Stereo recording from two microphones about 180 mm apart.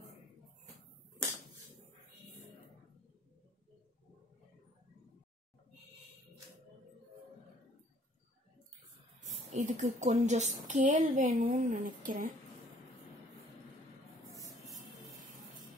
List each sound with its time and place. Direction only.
9.5 s a woman's voice: 40° right (ahead or behind)